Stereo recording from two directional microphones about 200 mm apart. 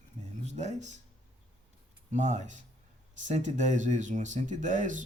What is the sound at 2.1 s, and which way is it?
Speech, 35° right (ahead or behind).